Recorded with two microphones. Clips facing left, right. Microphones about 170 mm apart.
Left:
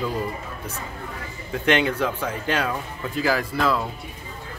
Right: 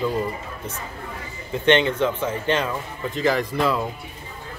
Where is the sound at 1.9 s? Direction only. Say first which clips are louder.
Right 3 dB; 25° right (ahead or behind).